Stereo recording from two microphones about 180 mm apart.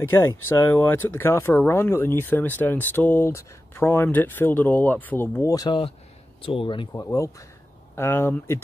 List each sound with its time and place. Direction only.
0.0 s speech: 15° left (ahead or behind)